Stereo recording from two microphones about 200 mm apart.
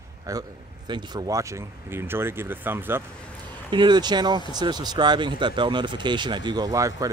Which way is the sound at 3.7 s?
20° right (ahead or behind).